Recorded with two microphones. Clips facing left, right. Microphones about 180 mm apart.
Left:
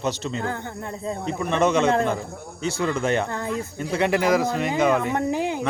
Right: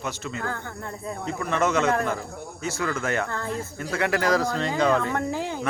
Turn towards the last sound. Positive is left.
turn(degrees=15)  # may be behind; listen again after turning